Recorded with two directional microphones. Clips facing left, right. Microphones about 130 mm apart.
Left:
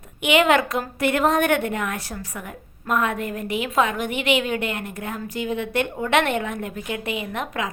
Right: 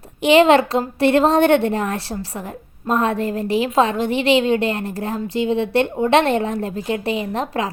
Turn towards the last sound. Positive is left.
turn(degrees=-35)  # may be behind; listen again after turning